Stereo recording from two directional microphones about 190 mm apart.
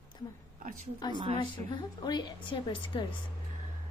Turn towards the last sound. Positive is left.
turn(degrees=25)  # may be behind; listen again after turning